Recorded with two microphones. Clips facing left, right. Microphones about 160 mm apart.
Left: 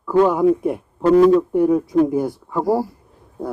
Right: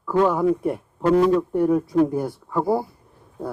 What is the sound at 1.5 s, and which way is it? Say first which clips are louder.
A man's voice: left 3 dB; 15° left (ahead or behind).